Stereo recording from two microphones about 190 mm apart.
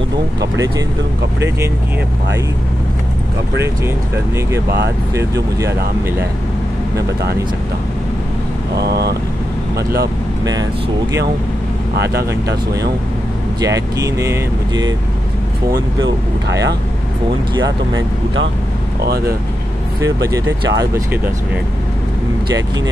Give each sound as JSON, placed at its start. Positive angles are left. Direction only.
{"t": 0.4, "sound": "speech", "side_deg": -20}
{"t": 5.1, "sound": "speech", "side_deg": -15}
{"t": 8.7, "sound": "speech", "side_deg": -60}
{"t": 10.4, "sound": "speech", "side_deg": -20}
{"t": 12.0, "sound": "speech", "side_deg": -60}
{"t": 13.6, "sound": "speech", "side_deg": -20}
{"t": 17.9, "sound": "speech", "side_deg": -80}
{"t": 19.0, "sound": "speech", "side_deg": -55}
{"t": 20.0, "sound": "speech", "side_deg": -15}